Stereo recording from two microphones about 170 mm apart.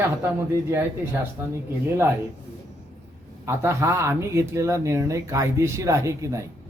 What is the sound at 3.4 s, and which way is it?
Speech, 15° right (ahead or behind).